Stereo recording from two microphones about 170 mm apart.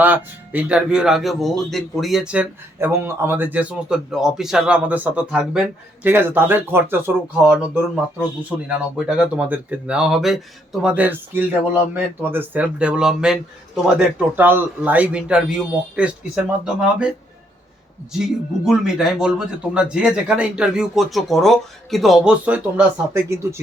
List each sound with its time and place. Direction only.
0.0 s speech: 10° right (ahead or behind)
18.1 s speech: centre (ahead or behind)